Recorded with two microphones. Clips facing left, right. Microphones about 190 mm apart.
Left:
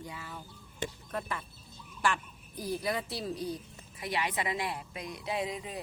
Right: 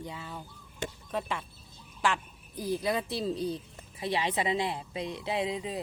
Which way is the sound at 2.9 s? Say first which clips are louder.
Right 4 dB; 25° right (ahead or behind).